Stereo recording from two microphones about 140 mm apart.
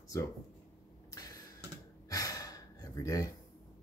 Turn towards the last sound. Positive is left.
turn(degrees=25)  # may be behind; listen again after turning